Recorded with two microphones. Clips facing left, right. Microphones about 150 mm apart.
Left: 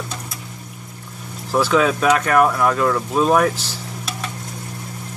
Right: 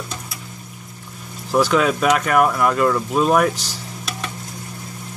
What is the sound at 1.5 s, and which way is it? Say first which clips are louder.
Speech: even; centre (ahead or behind).